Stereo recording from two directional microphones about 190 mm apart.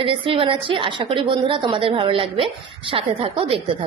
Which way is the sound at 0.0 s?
25° right (ahead or behind).